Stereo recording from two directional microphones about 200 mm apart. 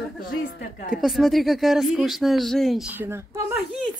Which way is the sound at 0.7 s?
45° left (ahead or behind).